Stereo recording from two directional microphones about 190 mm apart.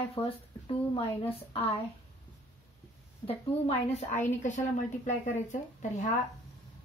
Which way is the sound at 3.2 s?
35° left (ahead or behind).